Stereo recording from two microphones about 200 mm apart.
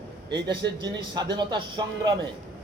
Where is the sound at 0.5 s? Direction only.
60° right (ahead or behind).